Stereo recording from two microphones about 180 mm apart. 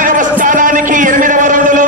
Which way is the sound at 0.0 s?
45° right (ahead or behind).